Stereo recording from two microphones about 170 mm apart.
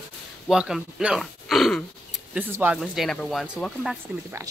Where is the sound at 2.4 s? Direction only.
10° right (ahead or behind).